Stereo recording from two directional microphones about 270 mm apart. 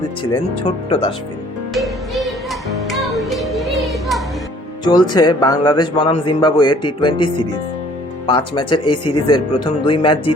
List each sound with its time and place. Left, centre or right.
0.9 s speech: left
1.7 s music: centre
4.8 s a man's voice: centre